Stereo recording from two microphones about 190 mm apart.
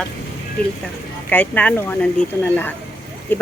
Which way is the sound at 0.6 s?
5° left (ahead or behind).